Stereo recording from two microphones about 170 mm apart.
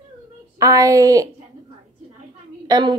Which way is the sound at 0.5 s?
20° right (ahead or behind).